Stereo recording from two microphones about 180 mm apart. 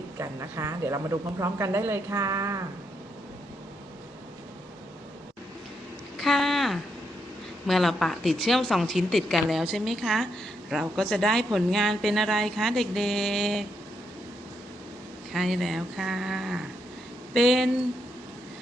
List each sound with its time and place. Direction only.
0.2 s speech: 15° right (ahead or behind)
6.1 s a sound: centre (ahead or behind)
7.7 s speech: centre (ahead or behind)
15.3 s speech: centre (ahead or behind)